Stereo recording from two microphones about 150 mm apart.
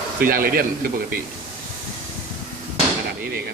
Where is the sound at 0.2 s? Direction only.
75° right (ahead or behind).